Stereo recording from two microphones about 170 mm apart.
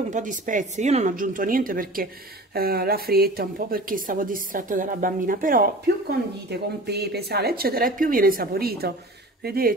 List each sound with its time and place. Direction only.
0.1 s speech: 50° right (ahead or behind)
6.5 s speech: 75° right (ahead or behind)